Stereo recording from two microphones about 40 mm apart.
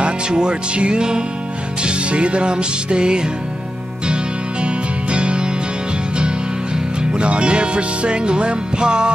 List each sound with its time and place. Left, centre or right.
0.0 s speech: right
1.8 s music: right
7.0 s music: right